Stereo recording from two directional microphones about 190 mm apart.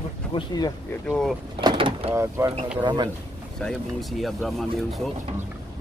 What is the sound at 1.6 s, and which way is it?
Door, 25° right (ahead or behind).